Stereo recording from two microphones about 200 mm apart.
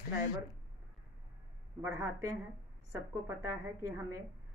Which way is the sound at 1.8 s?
15° right (ahead or behind).